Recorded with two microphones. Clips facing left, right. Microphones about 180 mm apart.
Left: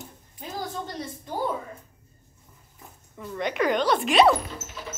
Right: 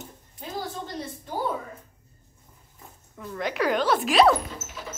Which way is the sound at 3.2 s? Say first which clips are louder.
Left 1 dB; centre (ahead or behind).